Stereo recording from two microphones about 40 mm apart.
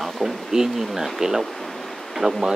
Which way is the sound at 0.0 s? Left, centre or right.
Centre.